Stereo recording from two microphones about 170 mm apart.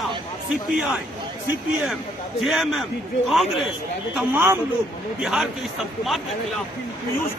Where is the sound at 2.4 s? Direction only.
Centre (ahead or behind).